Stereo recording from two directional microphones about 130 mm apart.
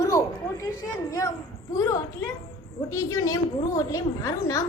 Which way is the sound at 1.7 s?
25° left (ahead or behind).